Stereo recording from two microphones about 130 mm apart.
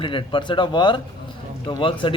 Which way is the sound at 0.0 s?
40° left (ahead or behind).